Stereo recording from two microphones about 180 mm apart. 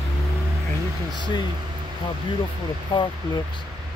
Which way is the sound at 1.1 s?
25° left (ahead or behind).